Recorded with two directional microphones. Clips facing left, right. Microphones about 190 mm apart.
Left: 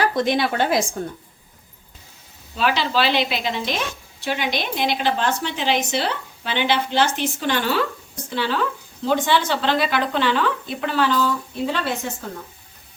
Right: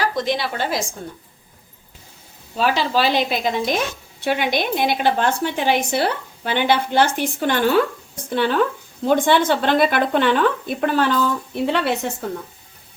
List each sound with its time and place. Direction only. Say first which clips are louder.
0.0 s a woman's voice: left 2 dB; 55° left (ahead or behind)
2.6 s a woman's voice: right 2 dB; 40° right (ahead or behind); by 12.1 s 65° right (ahead or behind)